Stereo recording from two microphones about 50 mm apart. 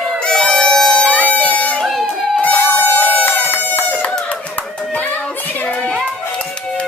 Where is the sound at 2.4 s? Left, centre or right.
Left.